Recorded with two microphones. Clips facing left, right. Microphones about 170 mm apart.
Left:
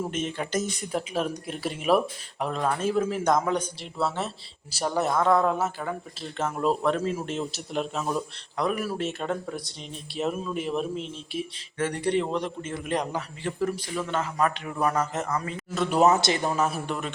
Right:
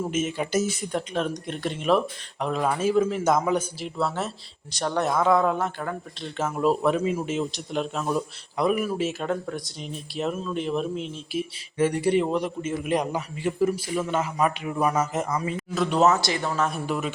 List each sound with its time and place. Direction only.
0.1 s speech: 5° right (ahead or behind)
8.5 s a man's voice: 10° right (ahead or behind)
15.7 s speech: centre (ahead or behind)
16.0 s speech: 15° left (ahead or behind)
16.6 s speech: 5° left (ahead or behind)